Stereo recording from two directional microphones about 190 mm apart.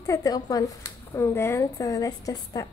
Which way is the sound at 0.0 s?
20° left (ahead or behind).